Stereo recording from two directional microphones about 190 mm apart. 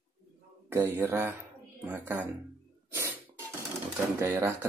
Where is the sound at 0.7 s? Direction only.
15° right (ahead or behind).